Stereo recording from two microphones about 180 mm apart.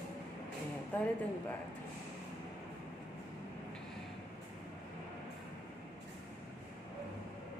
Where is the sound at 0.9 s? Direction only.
10° left (ahead or behind).